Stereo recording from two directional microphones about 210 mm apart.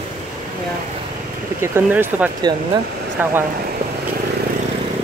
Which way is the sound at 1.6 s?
10° right (ahead or behind).